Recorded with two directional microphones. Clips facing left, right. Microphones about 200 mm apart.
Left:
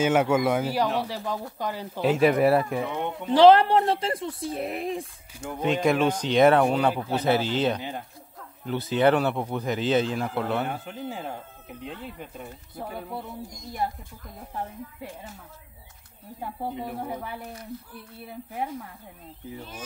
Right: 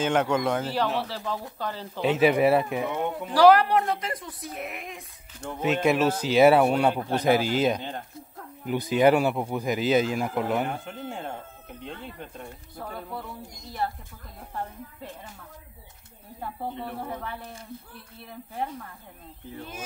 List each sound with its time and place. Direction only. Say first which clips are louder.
0.0 s speech: left 2 dB; 10° left (ahead or behind)
2.0 s speech: even; centre (ahead or behind)
3.3 s speech: left 2 dB; 25° left (ahead or behind)
5.6 s speech: even; 5° right (ahead or behind)
10.7 s speech: left 1 dB; centre (ahead or behind)
13.8 s speech: even; 15° left (ahead or behind)
16.3 s speech: left 1 dB; 10° left (ahead or behind)